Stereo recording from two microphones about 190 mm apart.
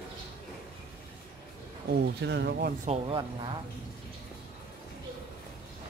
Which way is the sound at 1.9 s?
65° right (ahead or behind).